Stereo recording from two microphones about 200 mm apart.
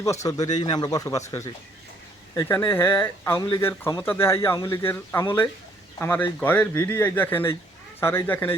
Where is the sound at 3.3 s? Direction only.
25° left (ahead or behind).